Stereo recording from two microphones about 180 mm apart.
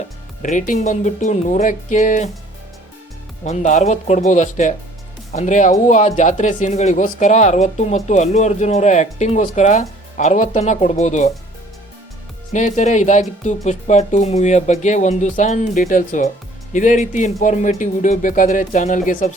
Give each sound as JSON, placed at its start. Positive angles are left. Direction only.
{"t": 0.4, "sound": "speech", "side_deg": 45}
{"t": 3.4, "sound": "speech", "side_deg": 40}
{"t": 12.5, "sound": "speech", "side_deg": 40}